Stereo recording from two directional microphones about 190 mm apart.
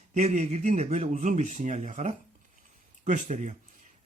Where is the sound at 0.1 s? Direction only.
35° right (ahead or behind).